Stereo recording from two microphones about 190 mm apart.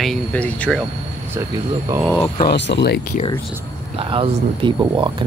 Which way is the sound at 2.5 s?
65° left (ahead or behind).